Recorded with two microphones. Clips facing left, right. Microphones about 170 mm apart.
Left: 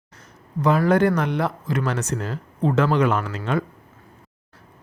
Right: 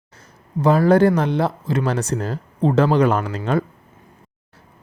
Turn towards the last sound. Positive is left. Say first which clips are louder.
# right 3 dB
turn(degrees=-35)  # may be behind; listen again after turning